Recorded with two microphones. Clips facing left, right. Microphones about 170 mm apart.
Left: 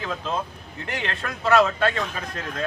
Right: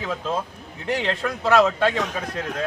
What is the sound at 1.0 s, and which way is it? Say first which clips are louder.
A man's voice: right 4 dB; 15° right (ahead or behind).